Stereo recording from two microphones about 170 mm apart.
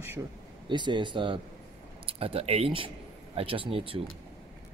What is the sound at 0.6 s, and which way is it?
Speech, 25° right (ahead or behind).